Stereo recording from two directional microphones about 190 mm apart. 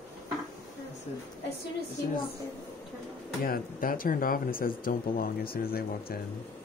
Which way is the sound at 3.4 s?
50° left (ahead or behind).